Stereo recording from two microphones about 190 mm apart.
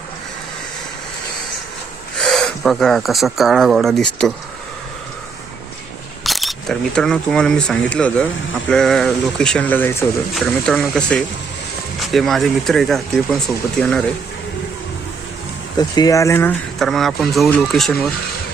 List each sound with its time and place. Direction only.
2.1 s speech: 5° left (ahead or behind)
6.2 s speech: centre (ahead or behind)
15.8 s speech: 20° left (ahead or behind)
16.7 s speech: centre (ahead or behind)